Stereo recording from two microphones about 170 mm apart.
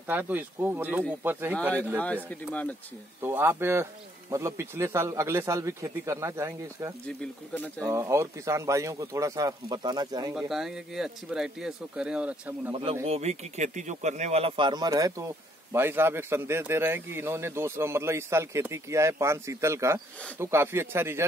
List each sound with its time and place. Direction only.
0.0 s speech: 10° right (ahead or behind)
2.2 s speech: 10° left (ahead or behind)
3.2 s speech: 15° right (ahead or behind)
7.1 s speech: 5° left (ahead or behind)
7.8 s speech: 20° right (ahead or behind)
10.3 s speech: 5° right (ahead or behind)
13.0 s speech: 40° right (ahead or behind); by 21.2 s 15° right (ahead or behind)